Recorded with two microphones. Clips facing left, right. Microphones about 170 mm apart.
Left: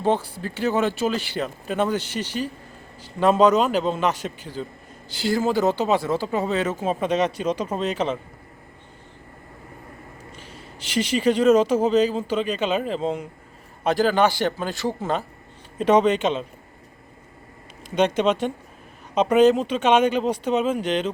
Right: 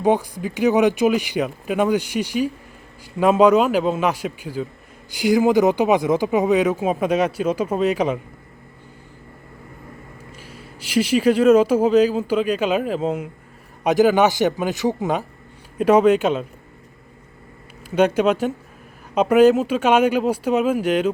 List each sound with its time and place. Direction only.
0.0 s speech: 15° right (ahead or behind)
10.3 s speech: 10° right (ahead or behind)
17.9 s speech: 10° right (ahead or behind)